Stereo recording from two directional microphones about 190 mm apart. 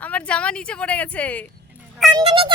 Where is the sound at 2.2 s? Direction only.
30° right (ahead or behind).